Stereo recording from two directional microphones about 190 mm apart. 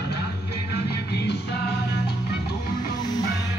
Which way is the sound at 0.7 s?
60° left (ahead or behind).